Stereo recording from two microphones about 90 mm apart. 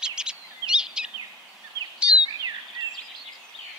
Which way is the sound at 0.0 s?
10° right (ahead or behind).